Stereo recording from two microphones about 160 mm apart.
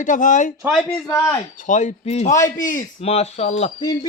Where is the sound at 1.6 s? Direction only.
50° left (ahead or behind).